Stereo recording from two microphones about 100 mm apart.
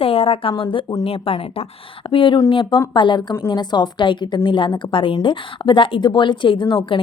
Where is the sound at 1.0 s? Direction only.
70° left (ahead or behind).